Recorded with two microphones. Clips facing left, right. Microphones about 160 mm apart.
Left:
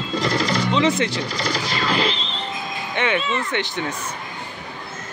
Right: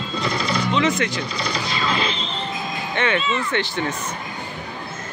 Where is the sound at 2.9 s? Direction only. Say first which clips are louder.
Even; 15° left (ahead or behind).